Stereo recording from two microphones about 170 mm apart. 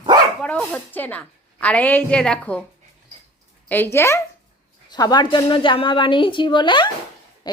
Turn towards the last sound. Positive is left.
turn(degrees=30)  # may be behind; listen again after turning